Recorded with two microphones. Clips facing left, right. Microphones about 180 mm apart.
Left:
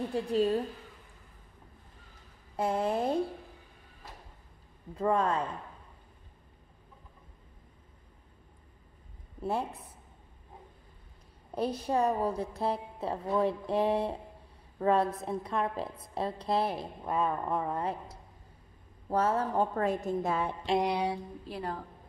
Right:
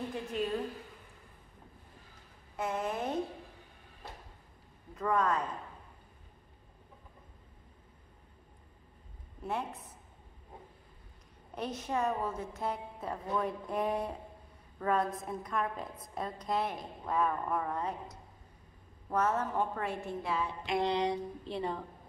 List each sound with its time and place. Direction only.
0.1 s a woman's voice: 35° left (ahead or behind)
2.5 s a woman's voice: 30° left (ahead or behind)
4.9 s speech: 30° left (ahead or behind)
9.4 s a woman's voice: 30° left (ahead or behind)
11.5 s a woman's voice: 35° left (ahead or behind)
17.0 s a woman's voice: 20° left (ahead or behind); by 20.5 s 50° left (ahead or behind)
20.8 s speech: 10° left (ahead or behind)